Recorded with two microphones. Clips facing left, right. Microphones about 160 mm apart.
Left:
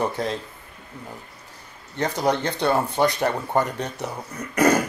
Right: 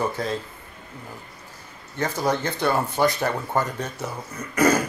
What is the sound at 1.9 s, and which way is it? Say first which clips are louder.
Speech: left 1 dB; 15° left (ahead or behind).